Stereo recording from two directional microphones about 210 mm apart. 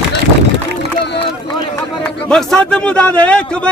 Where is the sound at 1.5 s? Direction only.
20° left (ahead or behind).